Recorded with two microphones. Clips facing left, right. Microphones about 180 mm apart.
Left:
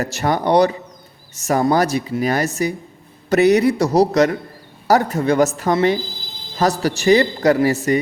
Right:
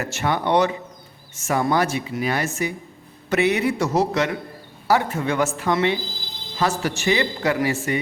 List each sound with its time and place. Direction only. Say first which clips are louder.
0.0 s speech: left 4 dB; 40° left (ahead or behind)